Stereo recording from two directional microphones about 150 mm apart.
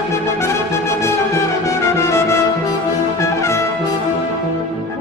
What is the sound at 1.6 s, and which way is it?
Brass instrument, 15° left (ahead or behind).